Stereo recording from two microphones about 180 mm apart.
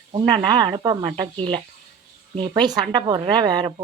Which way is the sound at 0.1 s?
25° right (ahead or behind).